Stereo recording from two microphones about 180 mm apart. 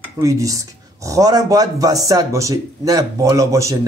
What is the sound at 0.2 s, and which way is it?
Speech, 20° right (ahead or behind).